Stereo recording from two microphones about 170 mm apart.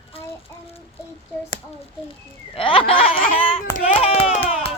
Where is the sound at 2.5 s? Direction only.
30° left (ahead or behind).